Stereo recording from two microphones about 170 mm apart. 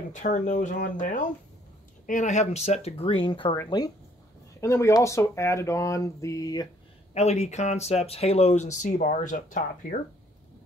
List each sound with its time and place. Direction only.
0.1 s speech: 45° left (ahead or behind); by 6.7 s 20° left (ahead or behind)
7.2 s speech: 40° left (ahead or behind)